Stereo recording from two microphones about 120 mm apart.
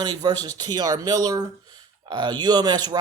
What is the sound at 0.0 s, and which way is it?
Speech, 35° right (ahead or behind).